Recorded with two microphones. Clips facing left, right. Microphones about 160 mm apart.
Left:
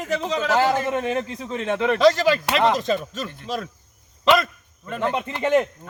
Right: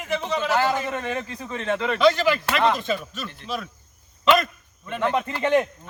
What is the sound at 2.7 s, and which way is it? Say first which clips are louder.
Speech: left 4 dB; 40° left (ahead or behind).